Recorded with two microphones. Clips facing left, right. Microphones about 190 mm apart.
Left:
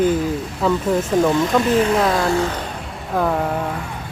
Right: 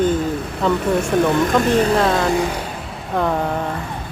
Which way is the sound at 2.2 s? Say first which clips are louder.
Even; 15° right (ahead or behind).